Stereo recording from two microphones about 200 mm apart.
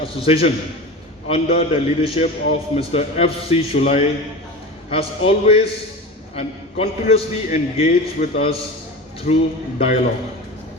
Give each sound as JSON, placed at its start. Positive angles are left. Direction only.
{"t": 0.3, "sound": "a man's voice", "side_deg": 30}